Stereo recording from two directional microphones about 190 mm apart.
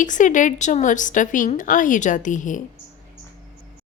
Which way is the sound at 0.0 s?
40° left (ahead or behind).